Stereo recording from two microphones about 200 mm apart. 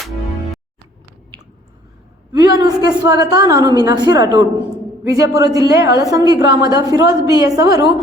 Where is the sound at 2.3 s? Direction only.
20° right (ahead or behind).